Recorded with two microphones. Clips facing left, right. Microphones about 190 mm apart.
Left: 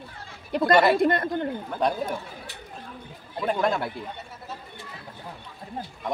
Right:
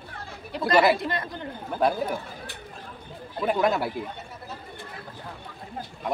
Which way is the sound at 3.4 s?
5° right (ahead or behind).